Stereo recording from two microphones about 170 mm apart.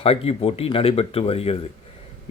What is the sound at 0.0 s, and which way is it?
Speech, 35° left (ahead or behind).